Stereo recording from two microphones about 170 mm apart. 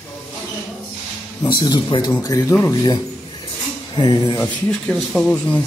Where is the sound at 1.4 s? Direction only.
25° left (ahead or behind).